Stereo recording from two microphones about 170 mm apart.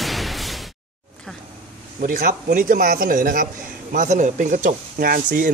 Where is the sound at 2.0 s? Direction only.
55° right (ahead or behind).